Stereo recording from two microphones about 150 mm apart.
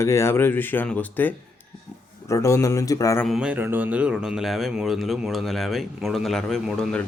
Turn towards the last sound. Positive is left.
turn(degrees=5)  # may be behind; listen again after turning